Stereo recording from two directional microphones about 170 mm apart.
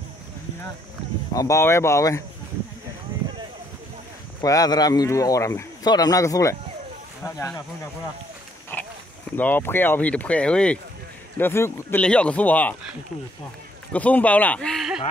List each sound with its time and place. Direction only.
1.3 s speech: 20° left (ahead or behind)
4.4 s speech: 20° left (ahead or behind)
8.7 s a sound: 10° left (ahead or behind)
9.4 s speech: 10° left (ahead or behind)
13.9 s speech: 10° left (ahead or behind)